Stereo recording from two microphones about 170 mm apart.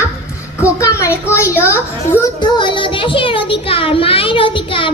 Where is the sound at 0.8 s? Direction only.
15° left (ahead or behind).